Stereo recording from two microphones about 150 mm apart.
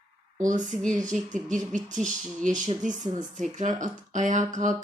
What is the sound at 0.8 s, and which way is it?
Speech, 5° left (ahead or behind).